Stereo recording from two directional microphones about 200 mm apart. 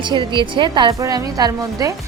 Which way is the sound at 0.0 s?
25° right (ahead or behind).